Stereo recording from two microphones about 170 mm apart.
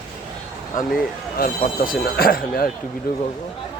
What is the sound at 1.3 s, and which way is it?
Speech, 60° left (ahead or behind).